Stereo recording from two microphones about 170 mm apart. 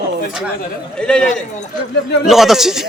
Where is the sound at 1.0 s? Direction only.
5° left (ahead or behind).